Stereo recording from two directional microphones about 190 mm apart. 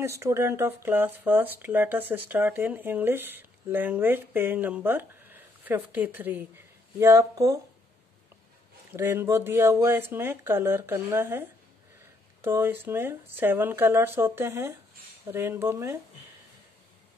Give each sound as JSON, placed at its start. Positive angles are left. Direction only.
{"t": 0.0, "sound": "speech", "side_deg": -15}
{"t": 8.9, "sound": "speech", "side_deg": -10}